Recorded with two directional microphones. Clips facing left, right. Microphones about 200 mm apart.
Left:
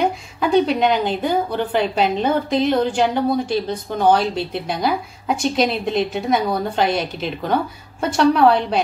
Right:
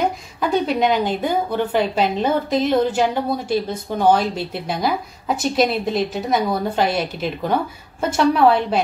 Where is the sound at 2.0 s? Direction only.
5° right (ahead or behind).